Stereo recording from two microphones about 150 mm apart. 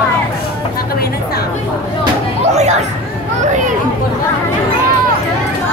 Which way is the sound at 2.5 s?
50° right (ahead or behind).